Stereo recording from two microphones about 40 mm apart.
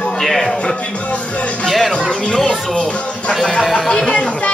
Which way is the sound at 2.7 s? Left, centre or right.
Left.